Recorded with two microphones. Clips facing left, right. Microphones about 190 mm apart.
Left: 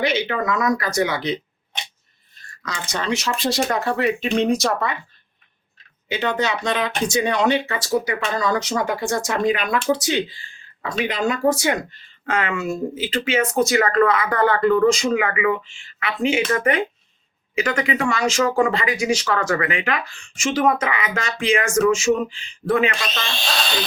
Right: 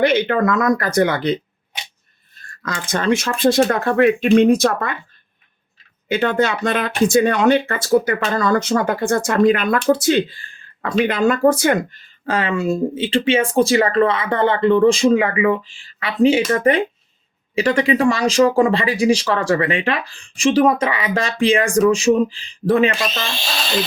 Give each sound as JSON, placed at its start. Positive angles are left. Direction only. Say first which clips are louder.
{"t": 0.0, "sound": "speech", "louder": "right 6 dB", "side_deg": -55}
{"t": 2.4, "sound": "speech", "louder": "right 4 dB", "side_deg": -50}
{"t": 6.1, "sound": "speech", "louder": "right 5 dB", "side_deg": -50}
{"t": 12.2, "sound": "speech", "louder": "right 4 dB", "side_deg": -30}
{"t": 23.4, "sound": "a sound", "louder": "right 2 dB", "side_deg": 0}